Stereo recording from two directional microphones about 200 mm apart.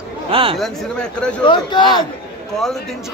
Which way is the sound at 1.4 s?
20° left (ahead or behind).